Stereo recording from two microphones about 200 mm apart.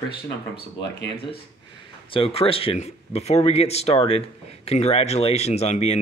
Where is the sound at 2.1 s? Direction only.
30° left (ahead or behind).